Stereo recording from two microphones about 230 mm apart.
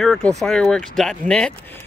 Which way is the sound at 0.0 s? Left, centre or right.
Centre.